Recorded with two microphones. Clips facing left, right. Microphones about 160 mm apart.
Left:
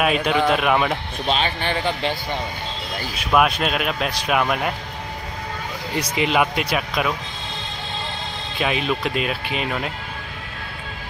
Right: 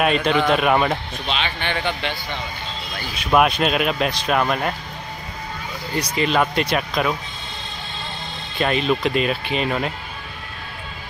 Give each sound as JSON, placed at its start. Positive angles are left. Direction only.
{"t": 0.0, "sound": "speech", "side_deg": 5}
{"t": 1.2, "sound": "speech", "side_deg": 40}
{"t": 3.3, "sound": "speech", "side_deg": 0}
{"t": 6.1, "sound": "speech", "side_deg": 15}
{"t": 8.5, "sound": "speech", "side_deg": 5}